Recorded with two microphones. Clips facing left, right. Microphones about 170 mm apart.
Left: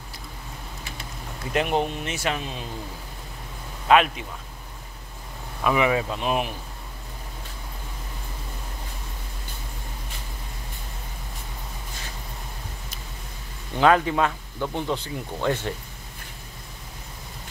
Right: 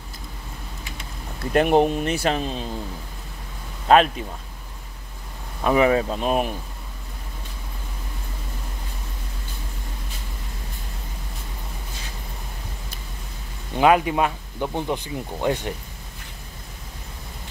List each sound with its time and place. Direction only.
1.5 s speech: 50° right (ahead or behind)
2.1 s speech: 35° right (ahead or behind)
3.8 s speech: 35° right (ahead or behind)
5.6 s speech: 40° right (ahead or behind)
13.7 s speech: 15° right (ahead or behind)